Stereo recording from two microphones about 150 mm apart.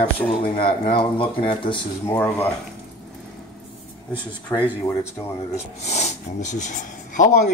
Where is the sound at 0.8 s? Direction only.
35° left (ahead or behind).